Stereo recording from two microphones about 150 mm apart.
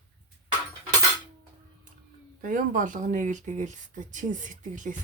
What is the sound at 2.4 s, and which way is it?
Speech, 60° right (ahead or behind).